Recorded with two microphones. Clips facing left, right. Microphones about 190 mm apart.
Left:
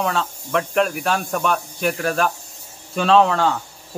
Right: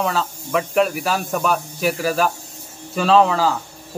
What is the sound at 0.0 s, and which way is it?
Speech, centre (ahead or behind).